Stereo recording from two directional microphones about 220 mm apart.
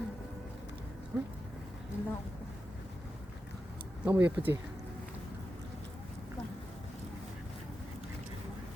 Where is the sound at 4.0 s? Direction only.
10° right (ahead or behind).